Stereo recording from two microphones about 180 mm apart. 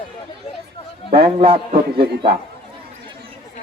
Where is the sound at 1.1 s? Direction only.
30° right (ahead or behind).